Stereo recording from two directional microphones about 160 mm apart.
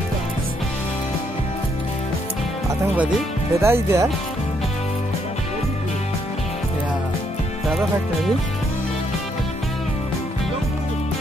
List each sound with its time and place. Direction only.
3.6 s speech: 15° right (ahead or behind)